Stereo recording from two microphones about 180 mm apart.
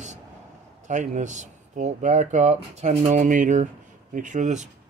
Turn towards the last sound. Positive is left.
turn(degrees=-40)  # may be behind; listen again after turning